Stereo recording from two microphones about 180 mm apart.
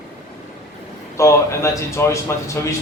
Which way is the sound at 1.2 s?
15° left (ahead or behind).